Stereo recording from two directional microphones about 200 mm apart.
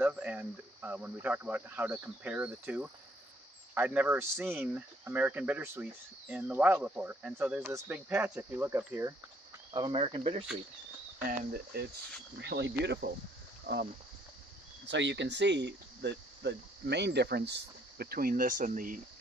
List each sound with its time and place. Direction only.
0.0 s speech: 5° right (ahead or behind)
9.7 s speech: 25° right (ahead or behind)
12.4 s speech: 60° right (ahead or behind)
14.9 s speech: 65° right (ahead or behind); by 18.9 s 40° right (ahead or behind)